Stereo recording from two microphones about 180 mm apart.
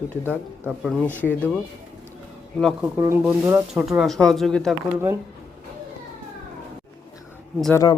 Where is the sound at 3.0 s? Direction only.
15° right (ahead or behind); by 4.8 s centre (ahead or behind).